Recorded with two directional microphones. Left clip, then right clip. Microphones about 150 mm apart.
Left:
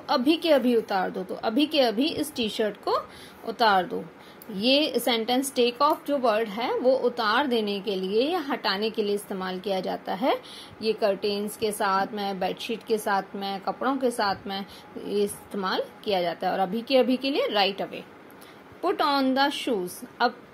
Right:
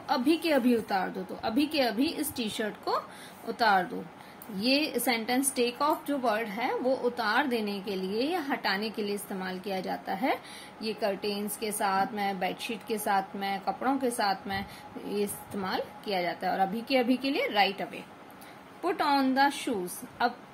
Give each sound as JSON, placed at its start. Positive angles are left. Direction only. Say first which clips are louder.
{"t": 0.0, "sound": "a woman's voice", "louder": "left 4 dB", "side_deg": 25}